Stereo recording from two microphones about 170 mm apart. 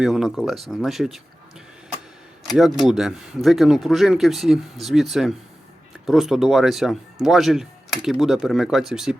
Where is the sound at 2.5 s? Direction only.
Centre (ahead or behind).